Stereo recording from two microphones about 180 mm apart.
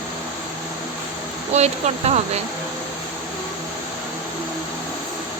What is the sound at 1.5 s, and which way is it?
Speech, 35° right (ahead or behind).